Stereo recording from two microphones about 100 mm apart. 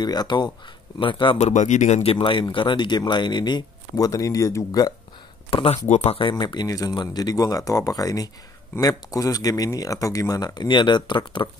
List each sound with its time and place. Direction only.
0.0 s speech: 45° left (ahead or behind)
0.9 s speech: 55° left (ahead or behind)
2.5 s speech: 55° left (ahead or behind); by 4.9 s 35° left (ahead or behind)
5.5 s speech: 80° left
6.2 s speech: 50° left (ahead or behind)